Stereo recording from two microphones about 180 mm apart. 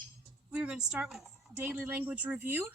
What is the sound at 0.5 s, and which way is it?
A woman's voice, 5° right (ahead or behind).